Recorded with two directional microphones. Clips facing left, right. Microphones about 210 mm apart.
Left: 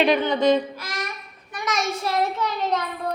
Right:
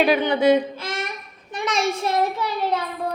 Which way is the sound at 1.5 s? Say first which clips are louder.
Right 3 dB; 25° right (ahead or behind).